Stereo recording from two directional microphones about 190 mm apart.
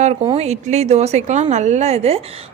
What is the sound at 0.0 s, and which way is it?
A woman's voice, 35° right (ahead or behind).